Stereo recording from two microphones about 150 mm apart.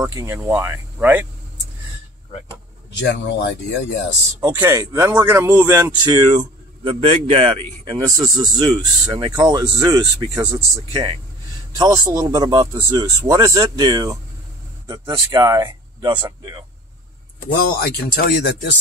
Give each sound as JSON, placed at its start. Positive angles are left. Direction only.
{"t": 0.0, "sound": "speech", "side_deg": -20}
{"t": 4.4, "sound": "speech", "side_deg": -20}
{"t": 6.0, "sound": "speech", "side_deg": -30}
{"t": 10.9, "sound": "speech", "side_deg": -30}
{"t": 17.5, "sound": "speech", "side_deg": 90}